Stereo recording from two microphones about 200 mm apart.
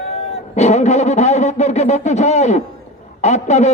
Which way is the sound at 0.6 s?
35° left (ahead or behind).